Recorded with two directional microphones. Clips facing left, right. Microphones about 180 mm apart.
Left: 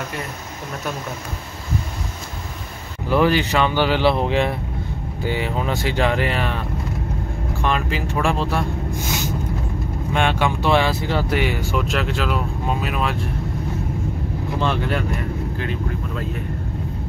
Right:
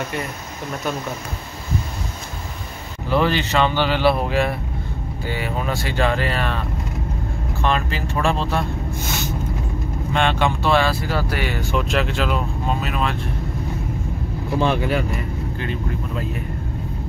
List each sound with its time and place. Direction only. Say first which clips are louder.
3.1 s speech: left 2 dB; 15° left (ahead or behind)
7.6 s speech: even; 10° left (ahead or behind)
10.1 s speech: even; 10° left (ahead or behind)
14.6 s speech: right 3 dB; 10° right (ahead or behind)